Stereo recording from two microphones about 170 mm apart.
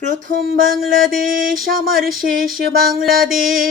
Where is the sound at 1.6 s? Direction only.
55° right (ahead or behind).